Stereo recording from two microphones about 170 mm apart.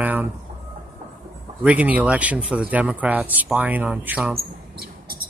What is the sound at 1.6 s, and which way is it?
Speech, 10° right (ahead or behind).